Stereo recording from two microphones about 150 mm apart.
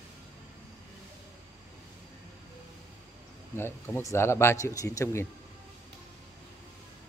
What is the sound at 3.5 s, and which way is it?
A man's voice, 15° left (ahead or behind).